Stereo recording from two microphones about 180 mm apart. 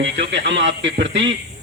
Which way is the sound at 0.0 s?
80° right.